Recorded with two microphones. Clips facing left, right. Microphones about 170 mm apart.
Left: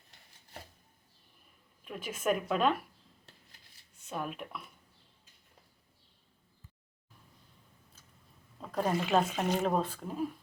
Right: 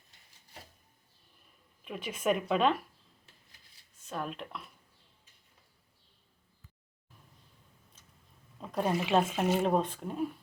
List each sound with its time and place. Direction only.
2.0 s speech: centre (ahead or behind)
4.1 s speech: 5° left (ahead or behind)
8.6 s speech: 5° right (ahead or behind)